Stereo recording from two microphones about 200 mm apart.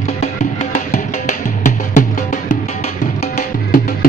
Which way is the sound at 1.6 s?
35° left (ahead or behind).